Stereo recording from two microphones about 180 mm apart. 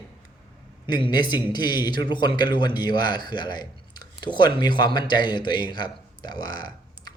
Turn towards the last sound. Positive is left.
turn(degrees=25)  # may be behind; listen again after turning